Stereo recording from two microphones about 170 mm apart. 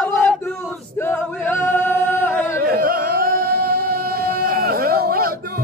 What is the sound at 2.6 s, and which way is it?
Music, 60° right (ahead or behind).